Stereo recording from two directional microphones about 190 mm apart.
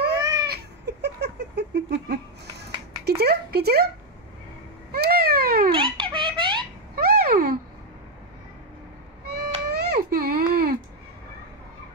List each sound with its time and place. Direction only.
0.2 s baby cry: 20° right (ahead or behind)
0.5 s a sound: 60° right (ahead or behind)
3.2 s a sound: 55° right (ahead or behind)
4.9 s cat: 55° right (ahead or behind)
5.7 s baby laughter: 25° right (ahead or behind)
7.0 s babbling: 55° right (ahead or behind)
9.3 s baby cry: 55° right (ahead or behind)